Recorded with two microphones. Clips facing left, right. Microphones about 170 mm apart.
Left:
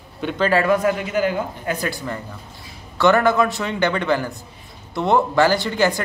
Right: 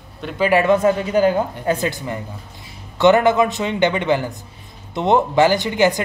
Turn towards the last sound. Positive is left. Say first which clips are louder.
# right 2 dB
turn(degrees=-15)  # may be behind; listen again after turning